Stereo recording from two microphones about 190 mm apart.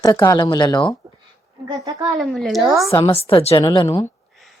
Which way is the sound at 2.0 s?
Centre (ahead or behind).